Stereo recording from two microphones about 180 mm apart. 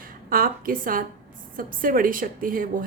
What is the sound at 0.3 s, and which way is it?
A woman's voice, 55° right (ahead or behind).